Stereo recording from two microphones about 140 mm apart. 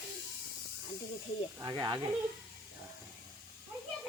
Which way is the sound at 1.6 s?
25° right (ahead or behind).